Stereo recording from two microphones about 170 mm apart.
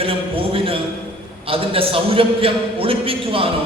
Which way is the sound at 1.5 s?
35° right (ahead or behind).